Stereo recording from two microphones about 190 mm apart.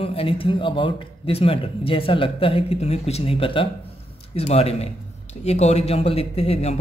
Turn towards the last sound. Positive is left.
turn(degrees=35)  # may be behind; listen again after turning